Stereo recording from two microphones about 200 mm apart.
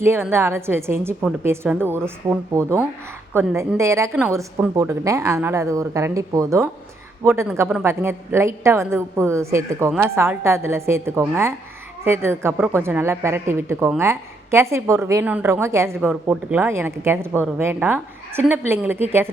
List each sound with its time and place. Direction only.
0.0 s a woman's voice: 10° right (ahead or behind)